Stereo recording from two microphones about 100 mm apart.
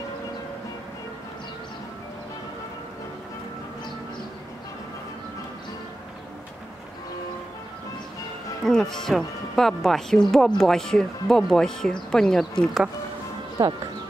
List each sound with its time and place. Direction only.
8.6 s speech: 5° left (ahead or behind)
13.6 s speech: 45° right (ahead or behind)